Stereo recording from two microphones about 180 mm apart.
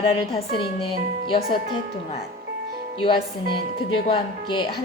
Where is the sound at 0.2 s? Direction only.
30° left (ahead or behind).